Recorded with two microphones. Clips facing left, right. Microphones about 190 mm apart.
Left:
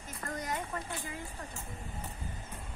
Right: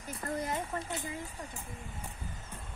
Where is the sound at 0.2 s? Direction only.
25° right (ahead or behind).